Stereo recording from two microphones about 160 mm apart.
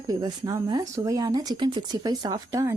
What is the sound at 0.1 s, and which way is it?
Speech, 25° right (ahead or behind).